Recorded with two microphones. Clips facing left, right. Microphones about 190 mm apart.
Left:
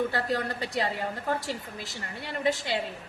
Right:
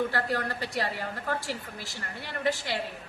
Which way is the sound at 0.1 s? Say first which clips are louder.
Left 1 dB; 20° left (ahead or behind).